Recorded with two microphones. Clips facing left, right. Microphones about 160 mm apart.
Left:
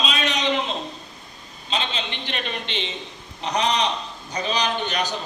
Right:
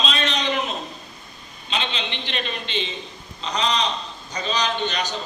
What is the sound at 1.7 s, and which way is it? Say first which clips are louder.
A man's voice: even; 40° left (ahead or behind).